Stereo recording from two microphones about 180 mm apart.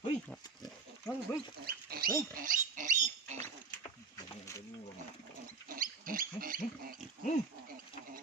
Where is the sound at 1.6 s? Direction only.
55° right (ahead or behind).